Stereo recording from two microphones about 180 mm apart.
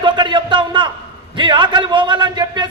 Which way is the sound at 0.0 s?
25° right (ahead or behind).